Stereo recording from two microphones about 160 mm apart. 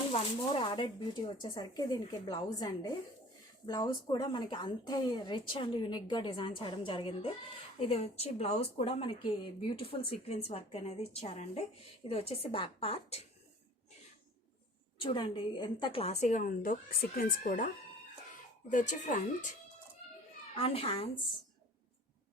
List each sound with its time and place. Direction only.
0.1 s speech: 35° left (ahead or behind)
14.9 s speech: 30° left (ahead or behind)
16.2 s speech: 55° left (ahead or behind)
18.7 s speech: 50° left (ahead or behind)
20.6 s speech: 40° left (ahead or behind)